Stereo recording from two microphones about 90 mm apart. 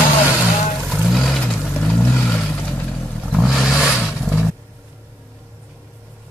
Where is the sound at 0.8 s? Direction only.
Centre (ahead or behind); by 2.9 s 20° left (ahead or behind).